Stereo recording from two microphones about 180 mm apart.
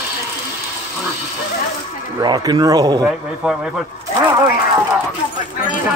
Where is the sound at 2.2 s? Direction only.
25° right (ahead or behind).